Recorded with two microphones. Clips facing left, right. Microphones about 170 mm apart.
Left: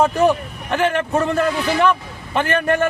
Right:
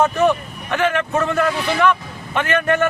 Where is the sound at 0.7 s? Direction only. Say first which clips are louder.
Left 1 dB; 30° left (ahead or behind).